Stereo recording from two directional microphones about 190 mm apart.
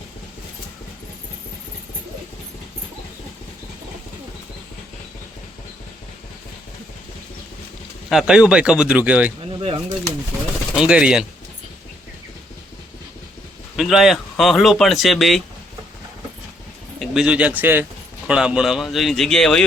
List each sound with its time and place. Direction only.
8.1 s speech: 5° right (ahead or behind)
9.6 s bird: 30° right (ahead or behind)
10.8 s speech: 5° right (ahead or behind)
13.7 s speech: centre (ahead or behind)
17.0 s speech: 5° right (ahead or behind)